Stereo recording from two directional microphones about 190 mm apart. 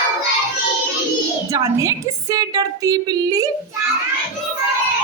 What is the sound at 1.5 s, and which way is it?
A woman's voice, 15° right (ahead or behind).